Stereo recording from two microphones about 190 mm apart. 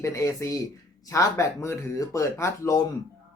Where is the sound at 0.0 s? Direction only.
15° left (ahead or behind).